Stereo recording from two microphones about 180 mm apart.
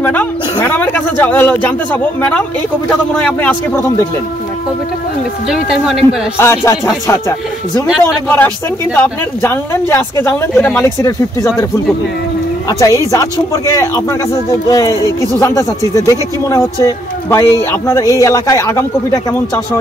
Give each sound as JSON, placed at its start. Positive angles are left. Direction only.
{"t": 0.0, "sound": "speech", "side_deg": 10}
{"t": 5.5, "sound": "speech", "side_deg": 0}
{"t": 6.3, "sound": "speech", "side_deg": 15}
{"t": 12.6, "sound": "speech", "side_deg": 20}